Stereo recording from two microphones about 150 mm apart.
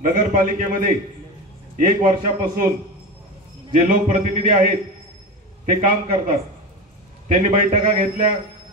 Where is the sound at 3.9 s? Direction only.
70° right (ahead or behind).